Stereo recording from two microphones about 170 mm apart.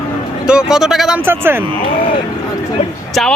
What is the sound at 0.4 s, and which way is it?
Speech, 5° right (ahead or behind).